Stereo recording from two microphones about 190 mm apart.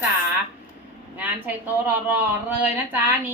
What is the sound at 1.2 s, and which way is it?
A woman's voice, 10° right (ahead or behind).